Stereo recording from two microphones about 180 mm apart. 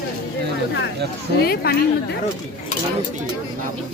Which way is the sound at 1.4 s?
60° left (ahead or behind).